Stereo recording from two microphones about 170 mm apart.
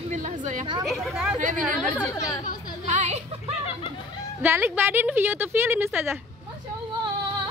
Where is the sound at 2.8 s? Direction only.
40° right (ahead or behind).